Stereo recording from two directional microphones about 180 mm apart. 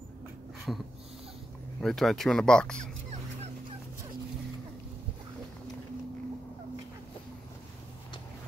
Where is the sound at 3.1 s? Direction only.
35° right (ahead or behind).